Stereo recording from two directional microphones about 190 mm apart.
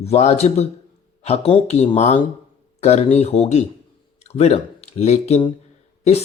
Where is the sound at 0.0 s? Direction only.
35° left (ahead or behind).